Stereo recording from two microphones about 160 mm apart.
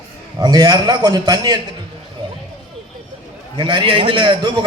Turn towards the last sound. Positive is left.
turn(degrees=-30)  # may be behind; listen again after turning